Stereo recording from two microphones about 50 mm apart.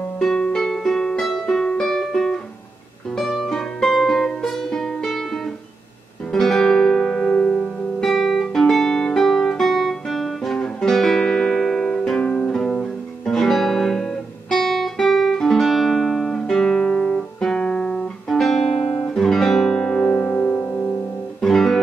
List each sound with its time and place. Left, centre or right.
0.2 s music: centre
6.3 s music: centre
13.3 s music: centre
14.5 s guitar: centre
15.6 s music: centre
18.4 s music: centre; by 20.2 s left
20.2 s music: left
21.4 s music: centre